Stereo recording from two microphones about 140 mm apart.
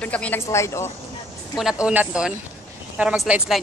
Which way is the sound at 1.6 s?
5° right (ahead or behind).